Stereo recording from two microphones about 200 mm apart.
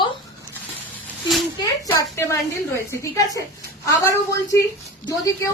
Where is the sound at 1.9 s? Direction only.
15° left (ahead or behind).